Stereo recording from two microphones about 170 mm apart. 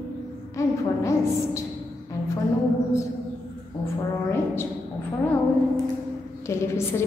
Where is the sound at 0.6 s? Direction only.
15° left (ahead or behind).